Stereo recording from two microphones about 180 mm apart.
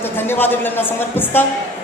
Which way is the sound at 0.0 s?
10° left (ahead or behind).